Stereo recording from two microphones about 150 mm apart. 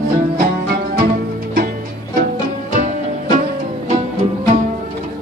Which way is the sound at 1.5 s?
80° right.